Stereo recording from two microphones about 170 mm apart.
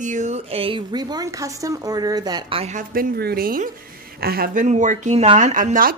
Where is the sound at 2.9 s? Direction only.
60° right (ahead or behind).